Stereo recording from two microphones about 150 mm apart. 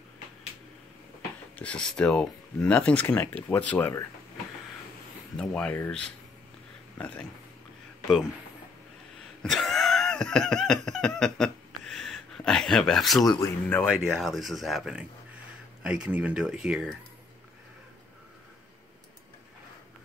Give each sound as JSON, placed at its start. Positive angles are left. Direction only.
{"t": 1.6, "sound": "speech", "side_deg": 5}
{"t": 5.4, "sound": "speech", "side_deg": 5}
{"t": 9.4, "sound": "a sound", "side_deg": 0}
{"t": 13.2, "sound": "speech", "side_deg": 25}
{"t": 13.7, "sound": "speech", "side_deg": 10}